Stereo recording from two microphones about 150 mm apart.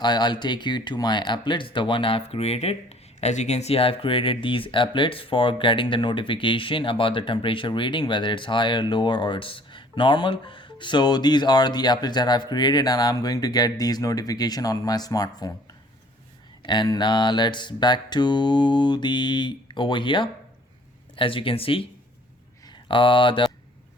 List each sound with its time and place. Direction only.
0.0 s speech: 30° left (ahead or behind)
16.6 s a sound: 30° left (ahead or behind)
21.2 s speech: 35° left (ahead or behind)
22.9 s speech: 35° left (ahead or behind)